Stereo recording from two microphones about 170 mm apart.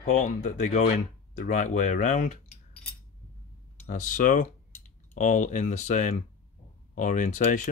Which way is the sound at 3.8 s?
50° left (ahead or behind).